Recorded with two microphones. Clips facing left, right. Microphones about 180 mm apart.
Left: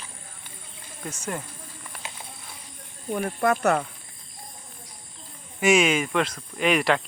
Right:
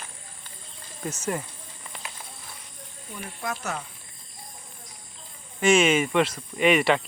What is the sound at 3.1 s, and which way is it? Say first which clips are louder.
Speech: left 10 dB; 55° left (ahead or behind).